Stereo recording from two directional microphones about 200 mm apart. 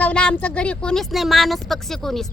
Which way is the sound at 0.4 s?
5° left (ahead or behind).